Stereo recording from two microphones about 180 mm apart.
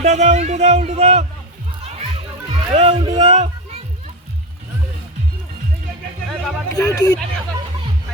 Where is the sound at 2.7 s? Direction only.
30° right (ahead or behind).